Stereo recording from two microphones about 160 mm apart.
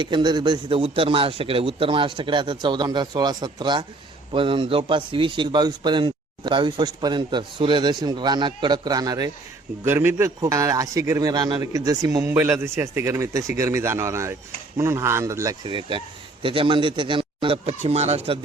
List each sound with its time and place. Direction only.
0.0 s speech: 30° right (ahead or behind)
9.8 s a man's voice: 15° right (ahead or behind)
15.6 s a man's voice: 30° right (ahead or behind)